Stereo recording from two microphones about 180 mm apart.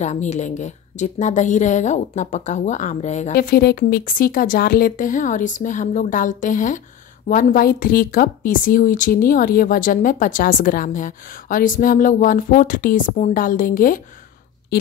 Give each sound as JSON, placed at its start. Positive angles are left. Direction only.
{"t": 0.0, "sound": "a woman's voice", "side_deg": 40}
{"t": 3.3, "sound": "speech", "side_deg": 60}